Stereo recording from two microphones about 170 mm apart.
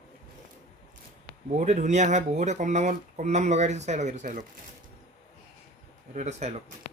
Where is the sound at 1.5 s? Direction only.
45° right (ahead or behind).